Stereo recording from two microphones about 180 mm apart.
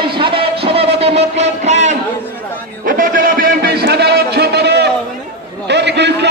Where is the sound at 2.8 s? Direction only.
50° right (ahead or behind).